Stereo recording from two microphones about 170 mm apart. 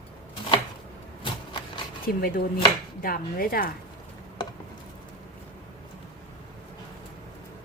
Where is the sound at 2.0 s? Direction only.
60° left (ahead or behind).